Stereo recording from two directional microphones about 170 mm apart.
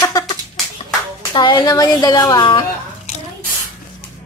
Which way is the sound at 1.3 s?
25° left (ahead or behind).